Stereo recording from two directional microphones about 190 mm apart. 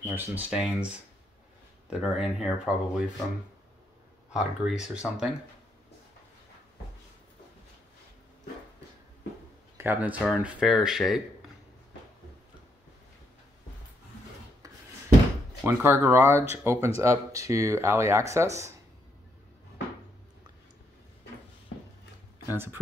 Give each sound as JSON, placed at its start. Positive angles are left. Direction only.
{"t": 0.0, "sound": "speech", "side_deg": -10}
{"t": 1.9, "sound": "speech", "side_deg": -5}
{"t": 4.4, "sound": "speech", "side_deg": 0}
{"t": 9.8, "sound": "speech", "side_deg": -10}
{"t": 15.6, "sound": "speech", "side_deg": -10}